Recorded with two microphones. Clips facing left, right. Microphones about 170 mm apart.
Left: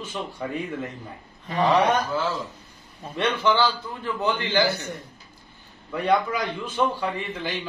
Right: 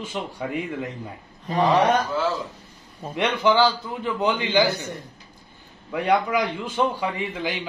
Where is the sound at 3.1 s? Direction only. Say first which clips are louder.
Right 2 dB; 15° right (ahead or behind).